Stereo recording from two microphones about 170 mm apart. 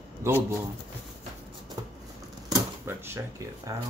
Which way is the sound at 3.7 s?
20° right (ahead or behind).